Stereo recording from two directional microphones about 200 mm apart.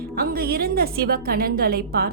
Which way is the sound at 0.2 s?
50° right (ahead or behind).